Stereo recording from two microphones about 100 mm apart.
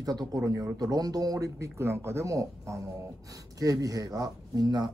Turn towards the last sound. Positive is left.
turn(degrees=-45)  # may be behind; listen again after turning